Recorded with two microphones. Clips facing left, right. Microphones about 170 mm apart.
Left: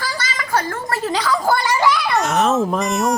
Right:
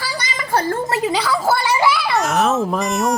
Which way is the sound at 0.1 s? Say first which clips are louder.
Even; 15° right (ahead or behind).